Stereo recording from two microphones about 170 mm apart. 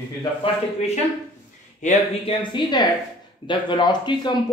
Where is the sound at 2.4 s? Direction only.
25° left (ahead or behind).